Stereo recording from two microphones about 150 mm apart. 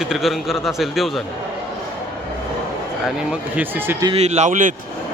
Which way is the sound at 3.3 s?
10° right (ahead or behind).